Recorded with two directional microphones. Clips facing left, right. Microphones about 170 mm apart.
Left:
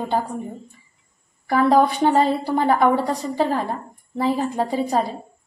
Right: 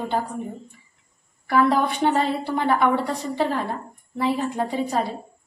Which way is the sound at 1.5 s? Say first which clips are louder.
Left 3 dB; 40° left (ahead or behind).